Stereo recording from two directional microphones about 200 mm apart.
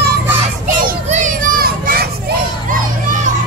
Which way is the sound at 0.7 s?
40° right (ahead or behind).